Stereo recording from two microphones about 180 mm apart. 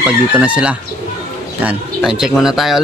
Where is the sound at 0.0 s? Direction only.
5° right (ahead or behind).